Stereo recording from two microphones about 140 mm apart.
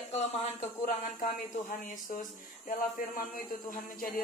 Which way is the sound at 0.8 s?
75° left (ahead or behind).